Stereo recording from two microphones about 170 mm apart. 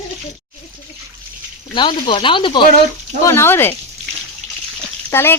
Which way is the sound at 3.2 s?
15° left (ahead or behind).